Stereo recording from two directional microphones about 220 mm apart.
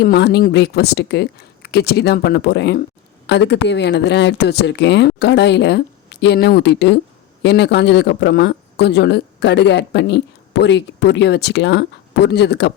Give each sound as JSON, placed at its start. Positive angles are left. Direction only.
{"t": 0.0, "sound": "speech", "side_deg": 45}